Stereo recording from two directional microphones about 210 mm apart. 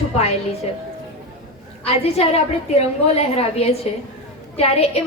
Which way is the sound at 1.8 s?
30° left (ahead or behind).